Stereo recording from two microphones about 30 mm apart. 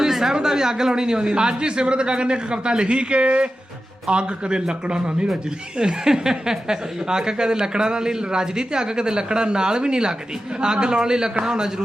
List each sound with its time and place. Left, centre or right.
0.0 s a sound: centre
0.3 s a man's voice: centre; by 5.3 s right
6.1 s speech: centre